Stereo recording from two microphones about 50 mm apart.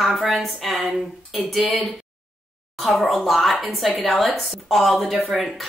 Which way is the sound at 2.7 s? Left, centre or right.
Centre.